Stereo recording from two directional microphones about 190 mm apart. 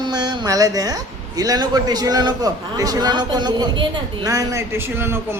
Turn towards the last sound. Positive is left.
turn(degrees=-10)  # may be behind; listen again after turning